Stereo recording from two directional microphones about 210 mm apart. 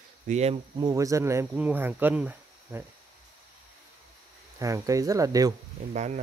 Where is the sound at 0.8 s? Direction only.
15° right (ahead or behind).